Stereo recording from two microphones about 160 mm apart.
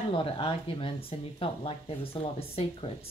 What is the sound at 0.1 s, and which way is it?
Speech, 35° left (ahead or behind).